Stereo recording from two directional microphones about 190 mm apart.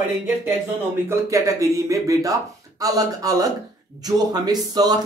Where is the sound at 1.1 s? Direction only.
15° right (ahead or behind).